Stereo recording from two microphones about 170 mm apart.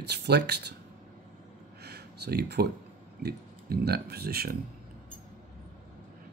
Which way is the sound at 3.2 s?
70° right (ahead or behind).